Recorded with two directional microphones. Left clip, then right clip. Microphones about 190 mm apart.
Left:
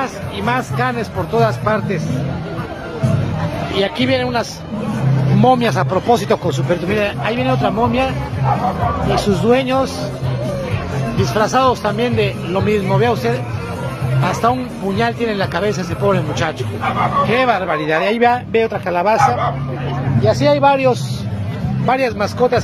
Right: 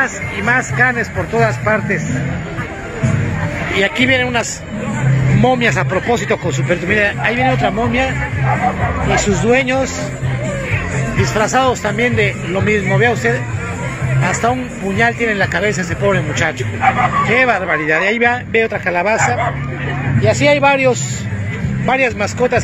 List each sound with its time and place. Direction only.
0.0 s speech: centre (ahead or behind)
3.7 s speech: centre (ahead or behind)
5.4 s a man's voice: 10° left (ahead or behind)
6.9 s speech: centre (ahead or behind)
9.1 s speech: centre (ahead or behind)
11.3 s speech: 5° right (ahead or behind)
20.2 s speech: 10° right (ahead or behind)
20.7 s speech: centre (ahead or behind)